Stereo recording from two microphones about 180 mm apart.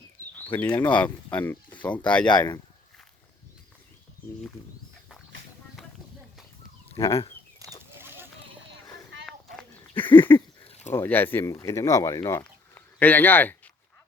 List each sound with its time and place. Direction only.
0.3 s a sound: 10° left (ahead or behind)
0.7 s speech: 10° left (ahead or behind)
2.2 s speech: 25° left (ahead or behind)
7.1 s speech: 35° left (ahead or behind)
7.6 s a sound: 15° right (ahead or behind)
9.2 s goat: 5° left (ahead or behind)
10.0 s speech: 25° left (ahead or behind)
10.6 s a sound: 35° left (ahead or behind)
10.9 s speech: 10° left (ahead or behind)